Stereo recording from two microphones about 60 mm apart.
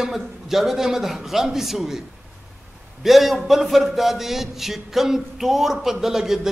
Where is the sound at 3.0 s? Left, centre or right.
Centre.